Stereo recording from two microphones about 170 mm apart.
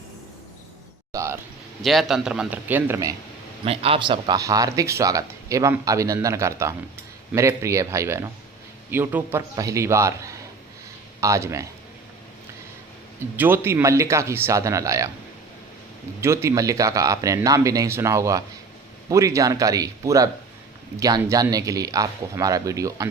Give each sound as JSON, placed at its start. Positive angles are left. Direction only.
{"t": 1.1, "sound": "a sound", "side_deg": -15}
{"t": 1.8, "sound": "a man's voice", "side_deg": 0}
{"t": 3.6, "sound": "a man's voice", "side_deg": -35}
{"t": 11.2, "sound": "a man's voice", "side_deg": -15}
{"t": 13.3, "sound": "a man's voice", "side_deg": -10}
{"t": 16.2, "sound": "speech", "side_deg": -15}